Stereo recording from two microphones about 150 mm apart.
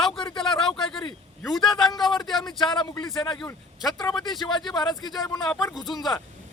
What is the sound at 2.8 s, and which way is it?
Speech, 30° left (ahead or behind).